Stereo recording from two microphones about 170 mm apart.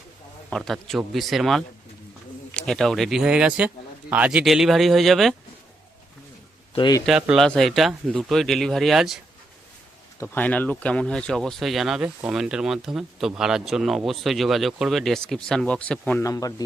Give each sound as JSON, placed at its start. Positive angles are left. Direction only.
{"t": 0.5, "sound": "speech", "side_deg": 5}
{"t": 6.7, "sound": "speech", "side_deg": 25}
{"t": 7.0, "sound": "speech", "side_deg": -5}
{"t": 10.2, "sound": "speech", "side_deg": 10}
{"t": 16.2, "sound": "speech", "side_deg": 20}